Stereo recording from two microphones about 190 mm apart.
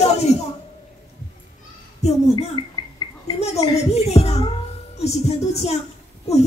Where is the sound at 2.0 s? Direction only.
35° left (ahead or behind).